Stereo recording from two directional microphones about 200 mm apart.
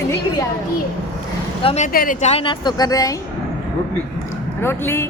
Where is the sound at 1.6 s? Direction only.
35° left (ahead or behind).